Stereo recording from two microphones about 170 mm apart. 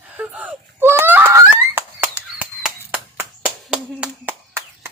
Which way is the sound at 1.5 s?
15° right (ahead or behind).